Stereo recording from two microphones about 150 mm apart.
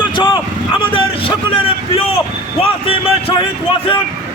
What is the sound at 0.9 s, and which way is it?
Music, 35° left (ahead or behind).